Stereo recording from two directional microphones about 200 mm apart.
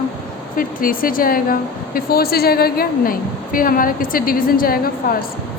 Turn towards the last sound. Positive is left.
turn(degrees=45)  # may be behind; listen again after turning